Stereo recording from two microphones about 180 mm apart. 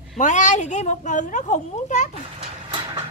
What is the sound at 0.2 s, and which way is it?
Speech, 40° left (ahead or behind).